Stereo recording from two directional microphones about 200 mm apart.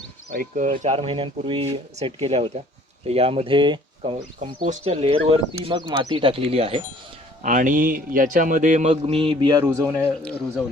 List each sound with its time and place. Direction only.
0.3 s a man's voice: 40° right (ahead or behind)
7.4 s a man's voice: 40° right (ahead or behind); by 10.1 s 15° right (ahead or behind)